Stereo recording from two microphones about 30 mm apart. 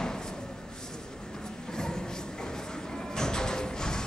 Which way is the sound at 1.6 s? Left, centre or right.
Left.